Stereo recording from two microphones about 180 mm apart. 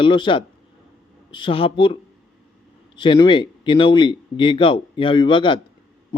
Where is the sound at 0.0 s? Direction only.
25° left (ahead or behind).